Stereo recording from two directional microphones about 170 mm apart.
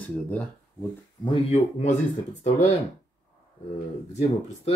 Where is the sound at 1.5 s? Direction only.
45° left (ahead or behind).